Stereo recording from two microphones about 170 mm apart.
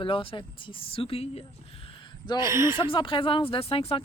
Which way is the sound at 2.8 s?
30° left (ahead or behind).